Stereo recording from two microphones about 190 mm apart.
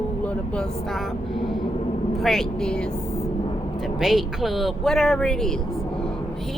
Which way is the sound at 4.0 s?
Centre (ahead or behind).